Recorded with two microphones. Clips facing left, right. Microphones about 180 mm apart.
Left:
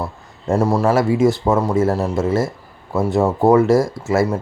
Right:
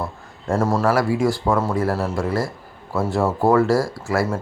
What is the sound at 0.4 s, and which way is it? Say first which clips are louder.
Speech: left 3 dB; 15° left (ahead or behind).